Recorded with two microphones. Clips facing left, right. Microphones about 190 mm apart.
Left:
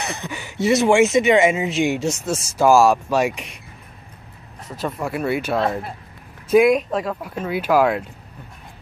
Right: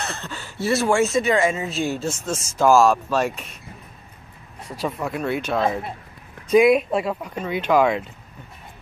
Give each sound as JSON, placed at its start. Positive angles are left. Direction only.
{"t": 0.0, "sound": "speech", "side_deg": 15}
{"t": 4.8, "sound": "speech", "side_deg": 0}
{"t": 7.2, "sound": "speech", "side_deg": 5}